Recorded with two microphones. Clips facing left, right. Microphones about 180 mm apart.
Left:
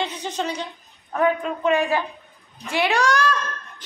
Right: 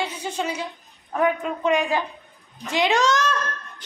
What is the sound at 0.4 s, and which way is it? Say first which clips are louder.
A woman's voice: left 1 dB; 5° right (ahead or behind).